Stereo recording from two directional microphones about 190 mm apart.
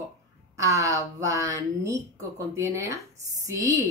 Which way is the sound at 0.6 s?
15° right (ahead or behind).